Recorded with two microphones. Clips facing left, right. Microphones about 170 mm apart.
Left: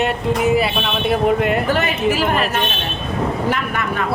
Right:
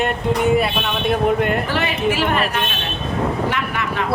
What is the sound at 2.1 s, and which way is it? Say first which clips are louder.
Speech: left 1 dB; 40° left (ahead or behind).